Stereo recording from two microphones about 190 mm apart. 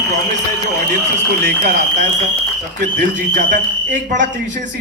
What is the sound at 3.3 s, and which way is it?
A man's voice, 40° right (ahead or behind).